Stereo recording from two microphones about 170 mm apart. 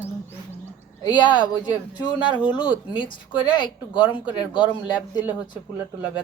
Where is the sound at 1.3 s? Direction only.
25° left (ahead or behind).